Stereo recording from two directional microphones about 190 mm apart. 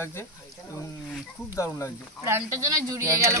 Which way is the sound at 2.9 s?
15° right (ahead or behind).